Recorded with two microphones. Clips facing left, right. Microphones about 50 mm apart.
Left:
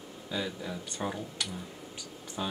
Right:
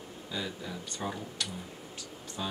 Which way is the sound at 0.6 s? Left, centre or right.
Centre.